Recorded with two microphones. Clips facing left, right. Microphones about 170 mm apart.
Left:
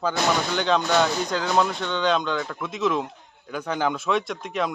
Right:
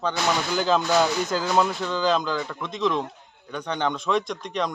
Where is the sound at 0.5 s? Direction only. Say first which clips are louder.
Right 2 dB; 5° right (ahead or behind).